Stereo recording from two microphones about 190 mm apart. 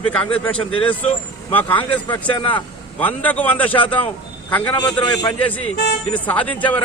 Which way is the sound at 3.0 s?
10° left (ahead or behind).